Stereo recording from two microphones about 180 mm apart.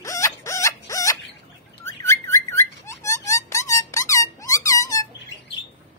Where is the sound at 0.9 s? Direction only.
15° left (ahead or behind).